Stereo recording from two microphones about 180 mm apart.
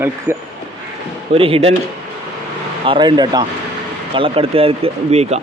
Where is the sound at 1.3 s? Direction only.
30° right (ahead or behind).